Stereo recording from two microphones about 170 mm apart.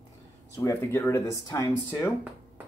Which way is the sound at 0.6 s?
15° left (ahead or behind).